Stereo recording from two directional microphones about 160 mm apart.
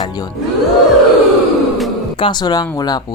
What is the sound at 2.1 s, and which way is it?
Speech, 30° left (ahead or behind).